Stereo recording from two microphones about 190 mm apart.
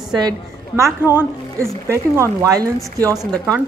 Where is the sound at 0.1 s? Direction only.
20° right (ahead or behind).